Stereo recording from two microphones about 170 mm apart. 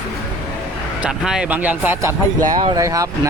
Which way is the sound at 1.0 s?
5° right (ahead or behind).